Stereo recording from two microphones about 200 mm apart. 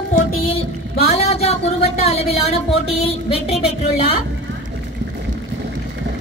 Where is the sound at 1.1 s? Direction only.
30° left (ahead or behind).